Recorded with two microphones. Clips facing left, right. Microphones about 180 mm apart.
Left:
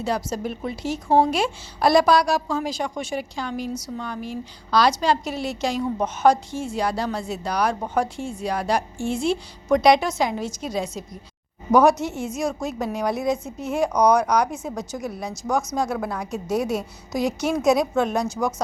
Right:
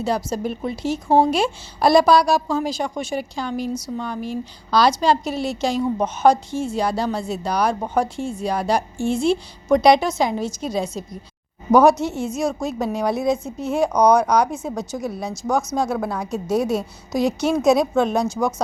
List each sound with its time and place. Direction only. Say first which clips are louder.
0.0 s a woman's voice: right 3 dB; 30° right (ahead or behind)